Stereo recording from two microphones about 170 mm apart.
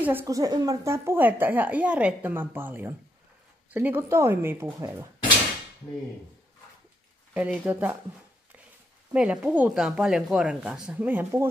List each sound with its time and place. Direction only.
0.0 s a woman's voice: 10° right (ahead or behind)
7.3 s a woman's voice: 10° right (ahead or behind)
9.1 s speech: 5° right (ahead or behind)